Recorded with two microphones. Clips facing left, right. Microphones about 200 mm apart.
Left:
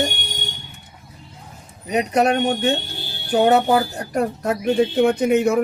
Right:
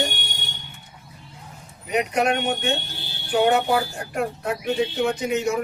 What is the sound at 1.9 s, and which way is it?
A woman's voice, 35° left (ahead or behind).